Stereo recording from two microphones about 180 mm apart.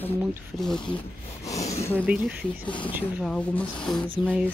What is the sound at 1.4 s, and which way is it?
Speech, 20° left (ahead or behind).